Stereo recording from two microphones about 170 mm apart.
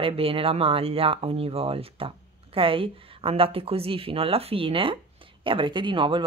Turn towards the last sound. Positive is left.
turn(degrees=-30)  # may be behind; listen again after turning